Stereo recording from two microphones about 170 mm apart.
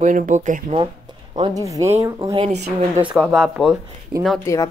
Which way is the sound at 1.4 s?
20° right (ahead or behind).